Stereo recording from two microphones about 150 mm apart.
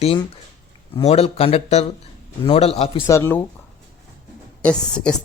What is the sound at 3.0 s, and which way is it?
Speech, 20° left (ahead or behind).